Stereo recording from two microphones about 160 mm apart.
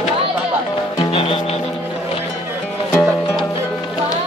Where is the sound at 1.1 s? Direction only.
35° left (ahead or behind).